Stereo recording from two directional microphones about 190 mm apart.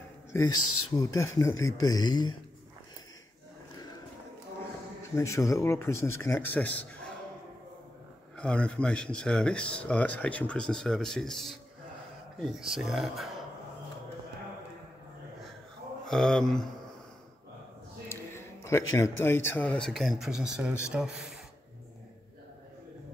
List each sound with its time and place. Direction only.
0.3 s speech: 15° left (ahead or behind)
5.1 s speech: 15° left (ahead or behind)
8.4 s speech: 5° left (ahead or behind)
16.1 s speech: 5° left (ahead or behind)
18.0 s a sound: 15° left (ahead or behind)
18.9 s speech: 15° left (ahead or behind); by 21.1 s 5° right (ahead or behind)